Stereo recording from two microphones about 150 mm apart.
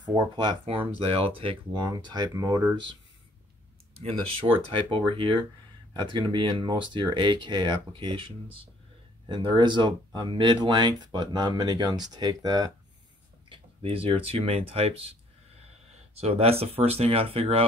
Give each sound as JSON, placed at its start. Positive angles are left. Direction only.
{"t": 0.1, "sound": "speech", "side_deg": -30}
{"t": 4.6, "sound": "speech", "side_deg": -35}
{"t": 9.3, "sound": "speech", "side_deg": -30}
{"t": 13.5, "sound": "speech", "side_deg": -35}
{"t": 16.2, "sound": "speech", "side_deg": -40}